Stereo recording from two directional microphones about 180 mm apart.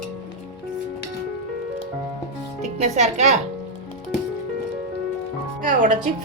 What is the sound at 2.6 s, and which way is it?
Speech, 40° right (ahead or behind).